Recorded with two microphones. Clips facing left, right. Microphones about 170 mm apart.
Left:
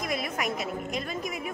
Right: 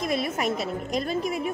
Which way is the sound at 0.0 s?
30° right (ahead or behind).